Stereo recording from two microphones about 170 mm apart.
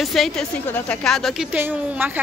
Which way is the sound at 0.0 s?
Centre (ahead or behind).